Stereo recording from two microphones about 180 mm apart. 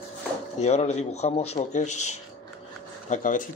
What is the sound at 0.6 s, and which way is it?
A man's voice, 35° left (ahead or behind).